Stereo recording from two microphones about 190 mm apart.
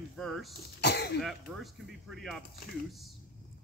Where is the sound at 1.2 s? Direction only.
Centre (ahead or behind).